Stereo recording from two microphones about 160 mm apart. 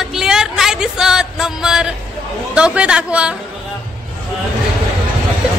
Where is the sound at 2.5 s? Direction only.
5° right (ahead or behind).